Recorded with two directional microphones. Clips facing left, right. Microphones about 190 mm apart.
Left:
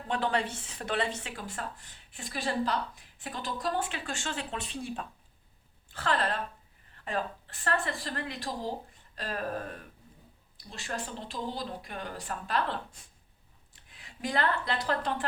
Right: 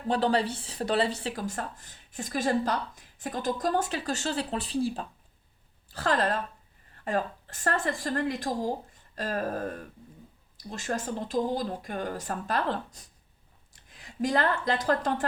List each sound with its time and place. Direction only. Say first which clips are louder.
0.1 s speech: right 5 dB; 35° right (ahead or behind)
10.6 s speech: right 5 dB; 45° right (ahead or behind)